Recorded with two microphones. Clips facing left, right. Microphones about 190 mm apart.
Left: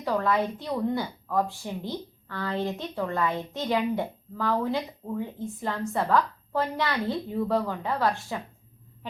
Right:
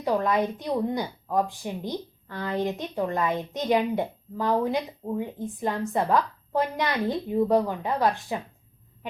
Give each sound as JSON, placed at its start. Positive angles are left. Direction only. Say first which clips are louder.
{"t": 0.0, "sound": "a woman's voice", "louder": "right 2 dB", "side_deg": -15}